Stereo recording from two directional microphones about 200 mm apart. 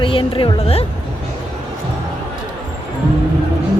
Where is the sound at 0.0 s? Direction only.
25° left (ahead or behind).